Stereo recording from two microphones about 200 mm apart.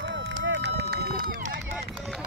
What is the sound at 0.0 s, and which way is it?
Run, 70° right (ahead or behind).